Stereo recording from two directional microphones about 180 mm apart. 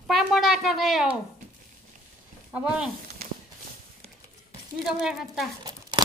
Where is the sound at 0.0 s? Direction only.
Centre (ahead or behind).